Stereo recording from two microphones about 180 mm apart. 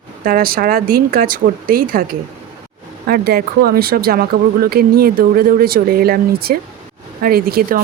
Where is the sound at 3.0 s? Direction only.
55° right (ahead or behind).